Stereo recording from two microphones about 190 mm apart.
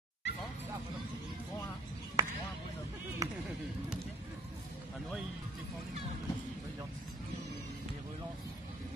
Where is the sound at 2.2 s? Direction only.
15° right (ahead or behind).